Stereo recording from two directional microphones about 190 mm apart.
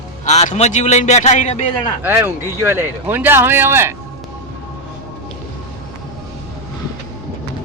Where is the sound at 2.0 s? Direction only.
10° right (ahead or behind).